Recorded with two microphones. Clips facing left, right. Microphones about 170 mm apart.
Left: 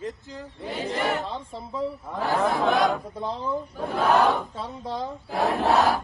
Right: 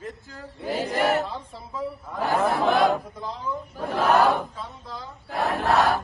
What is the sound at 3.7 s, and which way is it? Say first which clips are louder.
Speech: right 2 dB; centre (ahead or behind).